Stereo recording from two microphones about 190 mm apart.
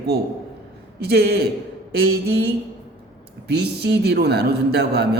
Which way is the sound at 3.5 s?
60° right (ahead or behind).